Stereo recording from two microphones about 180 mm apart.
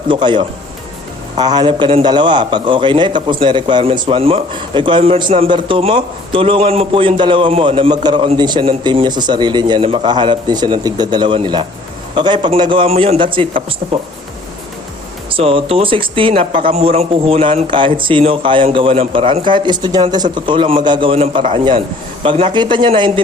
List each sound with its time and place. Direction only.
0.1 s a man's voice: 25° right (ahead or behind)
15.3 s a man's voice: 30° right (ahead or behind)